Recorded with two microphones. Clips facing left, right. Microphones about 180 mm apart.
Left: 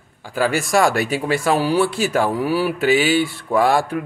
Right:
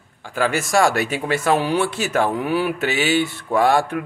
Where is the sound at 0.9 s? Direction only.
40° left (ahead or behind).